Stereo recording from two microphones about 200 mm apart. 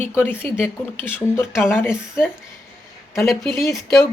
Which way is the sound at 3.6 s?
15° left (ahead or behind).